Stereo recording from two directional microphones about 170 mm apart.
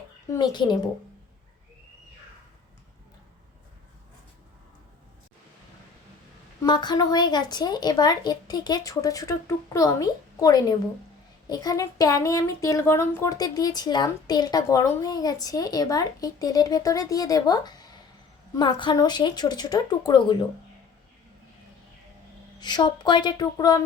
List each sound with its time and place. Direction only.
0.3 s speech: 25° left (ahead or behind)
6.6 s speech: 25° left (ahead or behind)
22.6 s speech: 25° left (ahead or behind)